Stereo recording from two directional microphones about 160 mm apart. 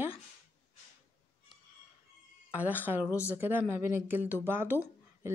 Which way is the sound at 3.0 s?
15° left (ahead or behind).